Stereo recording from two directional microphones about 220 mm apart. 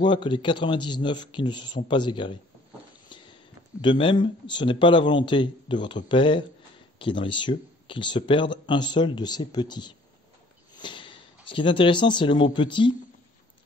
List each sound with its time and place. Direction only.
0.0 s speech: 20° left (ahead or behind)
3.1 s a sound: 20° left (ahead or behind)
3.8 s speech: 20° left (ahead or behind)